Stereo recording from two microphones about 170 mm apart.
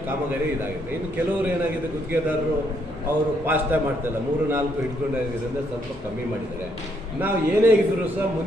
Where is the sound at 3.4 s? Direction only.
10° right (ahead or behind).